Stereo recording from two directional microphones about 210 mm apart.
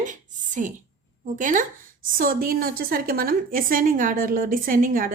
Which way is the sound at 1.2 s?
40° right (ahead or behind).